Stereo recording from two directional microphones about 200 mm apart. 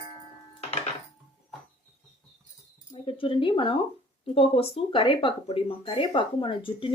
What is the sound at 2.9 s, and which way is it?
Speech, 25° left (ahead or behind).